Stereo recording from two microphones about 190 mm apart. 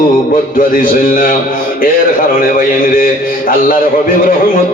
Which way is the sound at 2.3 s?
45° left (ahead or behind).